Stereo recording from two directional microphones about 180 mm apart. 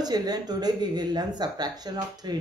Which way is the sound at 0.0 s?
20° right (ahead or behind).